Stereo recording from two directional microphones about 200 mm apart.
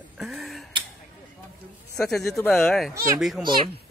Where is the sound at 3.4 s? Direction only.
25° right (ahead or behind).